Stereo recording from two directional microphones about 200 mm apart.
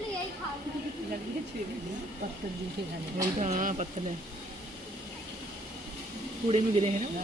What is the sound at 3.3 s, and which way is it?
Speech, 35° right (ahead or behind).